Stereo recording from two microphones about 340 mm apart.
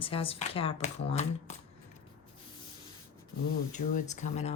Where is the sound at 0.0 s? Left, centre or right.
Centre.